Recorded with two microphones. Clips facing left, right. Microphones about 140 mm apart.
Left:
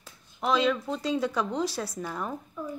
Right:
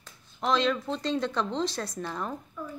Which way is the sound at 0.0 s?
5° left (ahead or behind).